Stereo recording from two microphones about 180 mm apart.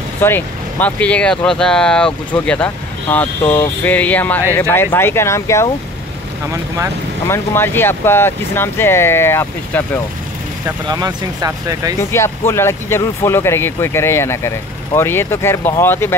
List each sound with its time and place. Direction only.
0.2 s speech: 10° left (ahead or behind)
7.2 s speech: 10° left (ahead or behind)
10.9 s speech: 20° right (ahead or behind)
12.0 s speech: 15° left (ahead or behind)